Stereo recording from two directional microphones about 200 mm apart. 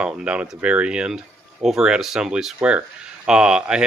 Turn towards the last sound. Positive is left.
turn(degrees=-5)  # may be behind; listen again after turning